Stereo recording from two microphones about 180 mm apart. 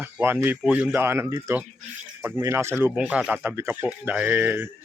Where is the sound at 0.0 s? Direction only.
10° right (ahead or behind).